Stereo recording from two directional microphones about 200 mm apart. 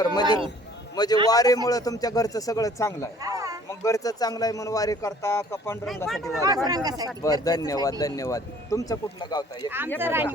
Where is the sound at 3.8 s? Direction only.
20° left (ahead or behind).